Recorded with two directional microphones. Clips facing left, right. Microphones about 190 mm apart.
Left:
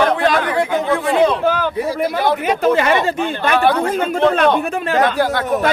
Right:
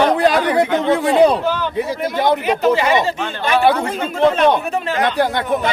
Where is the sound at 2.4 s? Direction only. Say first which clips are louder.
Even; 50° left (ahead or behind).